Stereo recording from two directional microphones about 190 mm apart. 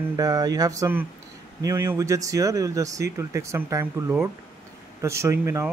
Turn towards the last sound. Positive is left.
turn(degrees=-15)  # may be behind; listen again after turning